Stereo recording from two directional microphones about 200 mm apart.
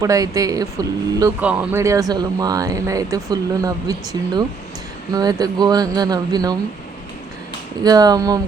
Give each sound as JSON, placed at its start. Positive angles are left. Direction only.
{"t": 0.0, "sound": "speech", "side_deg": -15}
{"t": 7.9, "sound": "speech", "side_deg": -20}